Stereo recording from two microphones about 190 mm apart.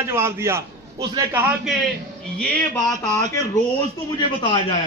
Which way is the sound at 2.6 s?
5° left (ahead or behind).